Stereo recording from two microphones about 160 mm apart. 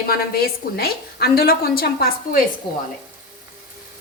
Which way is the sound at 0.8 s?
75° left (ahead or behind).